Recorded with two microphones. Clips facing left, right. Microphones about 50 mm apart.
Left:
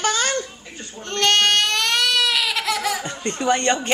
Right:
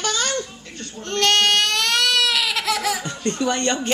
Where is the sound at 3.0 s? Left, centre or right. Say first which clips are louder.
Left 1 dB; left.